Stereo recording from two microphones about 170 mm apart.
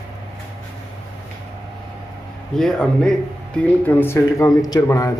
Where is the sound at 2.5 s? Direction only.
5° left (ahead or behind).